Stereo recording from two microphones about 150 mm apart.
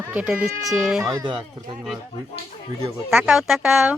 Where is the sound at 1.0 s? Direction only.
20° right (ahead or behind).